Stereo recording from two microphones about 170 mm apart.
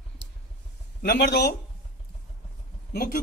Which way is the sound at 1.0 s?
75° left (ahead or behind).